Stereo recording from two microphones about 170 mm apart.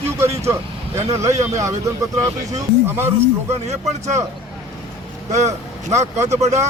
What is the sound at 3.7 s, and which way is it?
Speech, 40° right (ahead or behind).